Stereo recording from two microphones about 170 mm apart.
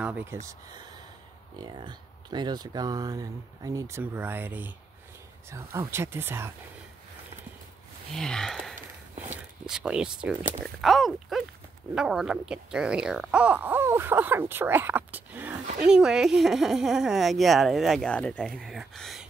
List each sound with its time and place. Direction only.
0.0 s speech: 10° right (ahead or behind)
0.5 s speech: 25° right (ahead or behind)
8.1 s speech: 5° left (ahead or behind)